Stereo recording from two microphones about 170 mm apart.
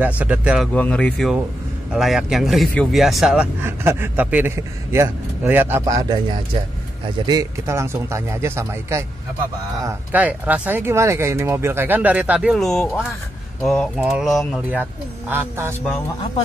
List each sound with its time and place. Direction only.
0.0 s speech: 10° right (ahead or behind)
0.7 s speech: 10° left (ahead or behind)
1.9 s speech: 5° right (ahead or behind)
3.6 s speech: 15° right (ahead or behind)
14.7 s speech: 10° right (ahead or behind)